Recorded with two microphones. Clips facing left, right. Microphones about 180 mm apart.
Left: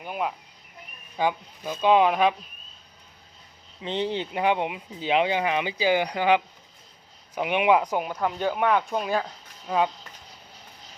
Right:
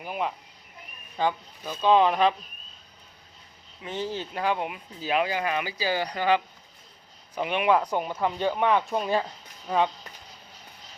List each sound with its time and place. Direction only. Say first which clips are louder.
0.0 s speech: left 1 dB; centre (ahead or behind)
1.1 s speech: left 1 dB; 15° left (ahead or behind)
3.8 s speech: left 4 dB; 20° left (ahead or behind); by 9.9 s 5° left (ahead or behind)